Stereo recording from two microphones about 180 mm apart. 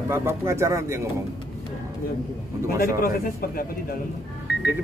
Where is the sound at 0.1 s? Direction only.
15° right (ahead or behind).